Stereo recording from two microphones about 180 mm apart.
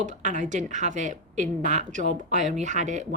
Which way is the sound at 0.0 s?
45° right (ahead or behind).